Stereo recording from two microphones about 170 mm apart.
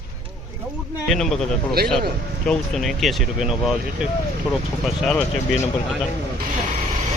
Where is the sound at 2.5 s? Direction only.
Centre (ahead or behind).